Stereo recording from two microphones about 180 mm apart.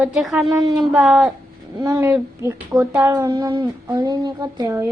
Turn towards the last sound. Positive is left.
turn(degrees=-15)  # may be behind; listen again after turning